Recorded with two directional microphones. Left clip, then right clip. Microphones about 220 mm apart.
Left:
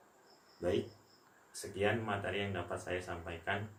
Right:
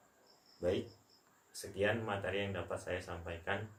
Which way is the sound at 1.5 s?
15° right (ahead or behind).